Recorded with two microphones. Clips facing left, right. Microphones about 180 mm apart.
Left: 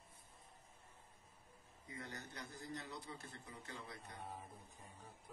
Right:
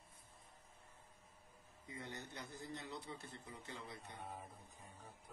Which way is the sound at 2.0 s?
25° right (ahead or behind).